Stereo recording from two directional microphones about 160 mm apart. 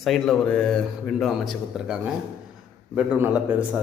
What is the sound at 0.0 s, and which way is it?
A man's voice, centre (ahead or behind).